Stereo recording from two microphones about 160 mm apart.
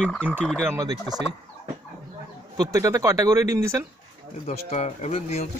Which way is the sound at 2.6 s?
20° right (ahead or behind).